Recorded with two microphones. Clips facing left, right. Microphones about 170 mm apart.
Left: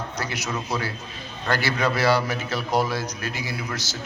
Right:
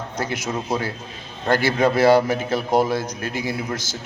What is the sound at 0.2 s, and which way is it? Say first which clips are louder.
Speech: right 6 dB; 50° right (ahead or behind).